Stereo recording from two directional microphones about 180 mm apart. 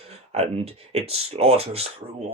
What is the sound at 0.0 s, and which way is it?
Speech, 35° right (ahead or behind).